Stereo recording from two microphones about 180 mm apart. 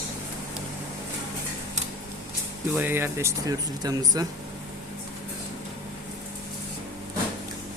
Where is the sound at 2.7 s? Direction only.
10° right (ahead or behind).